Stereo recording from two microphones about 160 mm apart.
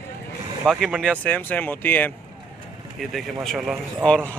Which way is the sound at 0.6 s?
Centre (ahead or behind).